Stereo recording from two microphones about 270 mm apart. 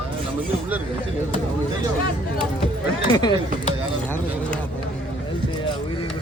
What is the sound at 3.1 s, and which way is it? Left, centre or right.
Speech, centre.